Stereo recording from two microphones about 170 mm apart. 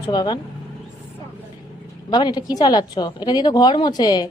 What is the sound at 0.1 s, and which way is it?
Speech, 25° left (ahead or behind).